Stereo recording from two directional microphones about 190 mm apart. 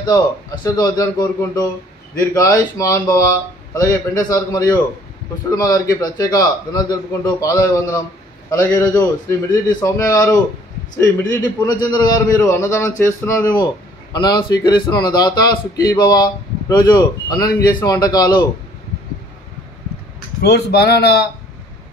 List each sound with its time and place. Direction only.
0.7 s a man's voice: 20° left (ahead or behind)
20.4 s a man's voice: 60° left (ahead or behind)